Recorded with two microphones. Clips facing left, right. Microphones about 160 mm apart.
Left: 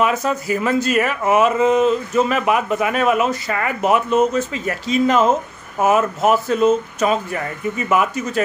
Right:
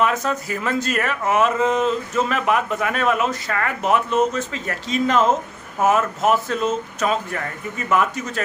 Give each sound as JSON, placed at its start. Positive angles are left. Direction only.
{"t": 0.0, "sound": "speech", "side_deg": 5}